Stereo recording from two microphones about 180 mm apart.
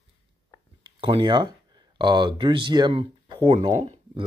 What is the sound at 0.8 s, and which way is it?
Speech, 25° right (ahead or behind).